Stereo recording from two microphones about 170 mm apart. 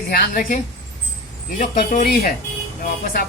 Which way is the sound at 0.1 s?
55° left (ahead or behind).